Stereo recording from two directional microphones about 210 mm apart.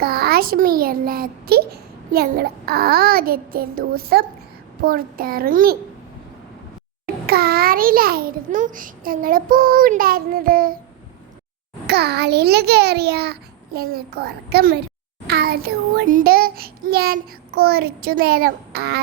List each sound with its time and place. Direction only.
0.0 s a child's voice: 45° right (ahead or behind)
7.3 s a child's voice: 45° right (ahead or behind)
11.9 s a child's voice: 50° right (ahead or behind)